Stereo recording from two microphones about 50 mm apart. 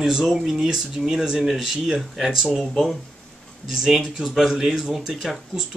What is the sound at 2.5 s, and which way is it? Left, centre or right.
Speech, centre.